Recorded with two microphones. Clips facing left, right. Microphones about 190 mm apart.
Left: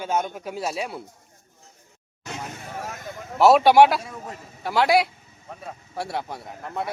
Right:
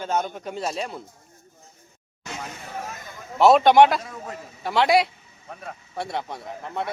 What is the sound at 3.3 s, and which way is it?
Speech, 5° left (ahead or behind).